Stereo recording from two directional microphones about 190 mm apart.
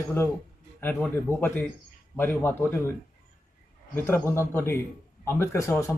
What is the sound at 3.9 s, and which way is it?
A man's voice, 10° left (ahead or behind).